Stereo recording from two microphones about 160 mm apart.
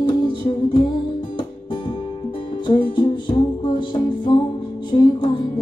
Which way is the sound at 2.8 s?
30° left (ahead or behind).